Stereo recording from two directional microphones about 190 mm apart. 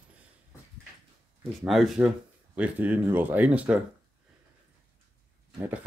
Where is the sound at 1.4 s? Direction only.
5° right (ahead or behind).